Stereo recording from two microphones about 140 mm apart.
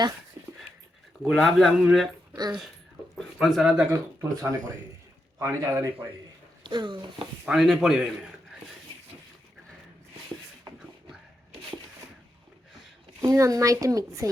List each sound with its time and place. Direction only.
1.2 s a man's voice: centre (ahead or behind)
3.2 s speech: centre (ahead or behind)
3.9 s speech: 20° right (ahead or behind)
6.6 s speech: 35° right (ahead or behind)
7.4 s a man's voice: centre (ahead or behind)
13.2 s speech: 25° right (ahead or behind)